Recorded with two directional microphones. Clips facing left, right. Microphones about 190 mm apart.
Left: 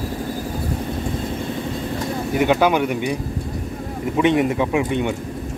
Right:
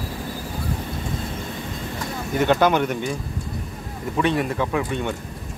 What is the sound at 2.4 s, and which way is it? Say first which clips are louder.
Speech: left 1 dB; 10° left (ahead or behind).